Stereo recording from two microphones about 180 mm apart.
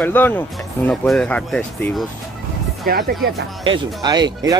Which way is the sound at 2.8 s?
60° right (ahead or behind).